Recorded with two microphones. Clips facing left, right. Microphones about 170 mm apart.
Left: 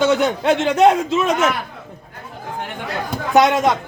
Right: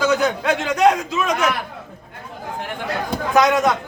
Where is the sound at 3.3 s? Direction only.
25° left (ahead or behind).